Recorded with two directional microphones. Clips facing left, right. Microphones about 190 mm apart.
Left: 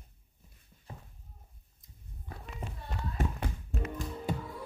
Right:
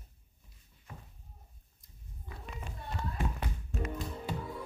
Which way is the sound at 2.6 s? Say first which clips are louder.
Left 4 dB; 35° left (ahead or behind).